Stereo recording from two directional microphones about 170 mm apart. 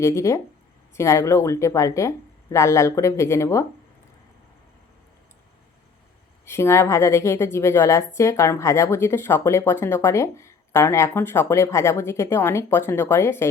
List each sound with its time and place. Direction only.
0.0 s a woman's voice: 15° left (ahead or behind)
6.4 s a woman's voice: 15° left (ahead or behind)